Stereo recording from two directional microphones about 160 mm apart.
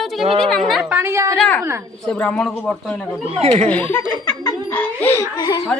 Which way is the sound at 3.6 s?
10° left (ahead or behind).